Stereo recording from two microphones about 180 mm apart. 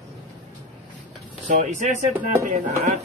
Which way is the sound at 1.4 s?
40° right (ahead or behind).